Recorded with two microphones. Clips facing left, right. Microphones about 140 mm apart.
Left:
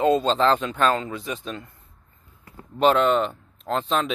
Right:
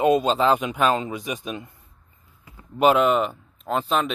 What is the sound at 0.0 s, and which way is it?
Speech, 15° right (ahead or behind).